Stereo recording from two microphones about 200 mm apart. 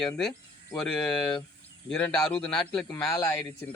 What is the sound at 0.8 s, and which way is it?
Speech, 5° left (ahead or behind).